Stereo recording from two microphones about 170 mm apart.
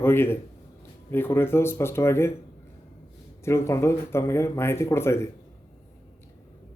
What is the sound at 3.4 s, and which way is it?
A man's voice, 15° left (ahead or behind).